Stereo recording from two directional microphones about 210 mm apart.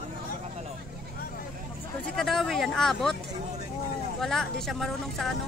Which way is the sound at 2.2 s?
Centre (ahead or behind).